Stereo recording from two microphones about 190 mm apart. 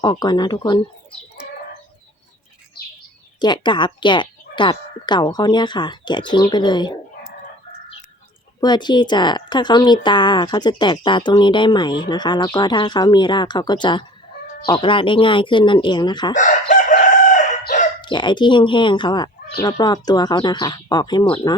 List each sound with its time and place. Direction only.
0.0 s a woman's voice: 20° left (ahead or behind)
3.4 s a woman's voice: 25° left (ahead or behind)
8.6 s a woman's voice: 25° left (ahead or behind)
16.3 s chicken: 40° left (ahead or behind)
18.0 s a woman's voice: 25° left (ahead or behind)